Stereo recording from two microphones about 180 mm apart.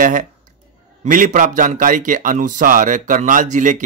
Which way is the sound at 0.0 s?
45° right (ahead or behind).